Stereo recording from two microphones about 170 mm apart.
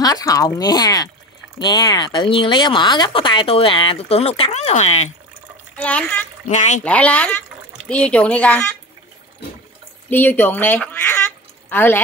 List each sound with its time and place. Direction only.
0.0 s speech: 20° left (ahead or behind); by 5.1 s 40° left (ahead or behind)
5.8 s speech: 10° left (ahead or behind)
6.5 s speech: 45° left (ahead or behind)
6.8 s speech: 10° left (ahead or behind)
10.0 s speech: 10° left (ahead or behind)